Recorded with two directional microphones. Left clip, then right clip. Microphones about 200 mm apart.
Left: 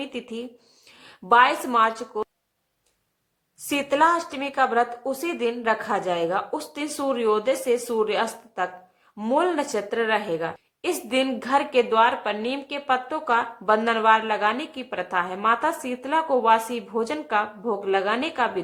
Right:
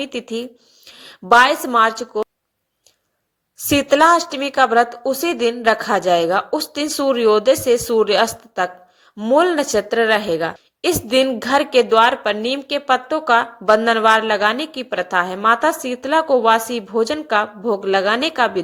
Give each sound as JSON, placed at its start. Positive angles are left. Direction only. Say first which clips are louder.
{"t": 0.0, "sound": "a woman's voice", "louder": "right 8 dB", "side_deg": -20}
{"t": 3.7, "sound": "a woman's voice", "louder": "right 8 dB", "side_deg": -25}